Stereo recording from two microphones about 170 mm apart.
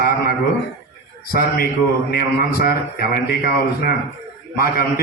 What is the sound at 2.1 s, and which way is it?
Speech, 60° left (ahead or behind).